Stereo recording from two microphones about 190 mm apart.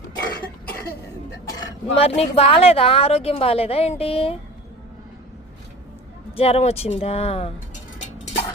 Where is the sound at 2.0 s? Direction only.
30° left (ahead or behind).